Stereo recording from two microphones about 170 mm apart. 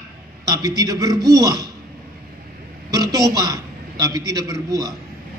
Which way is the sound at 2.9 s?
20° right (ahead or behind).